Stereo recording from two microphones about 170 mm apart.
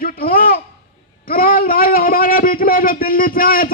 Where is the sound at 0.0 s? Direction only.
60° left (ahead or behind).